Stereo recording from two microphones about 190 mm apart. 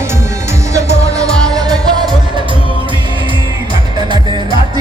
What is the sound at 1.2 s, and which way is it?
Music, 5° left (ahead or behind).